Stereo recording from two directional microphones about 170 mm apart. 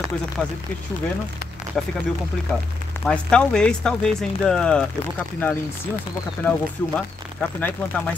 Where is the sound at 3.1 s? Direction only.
5° left (ahead or behind).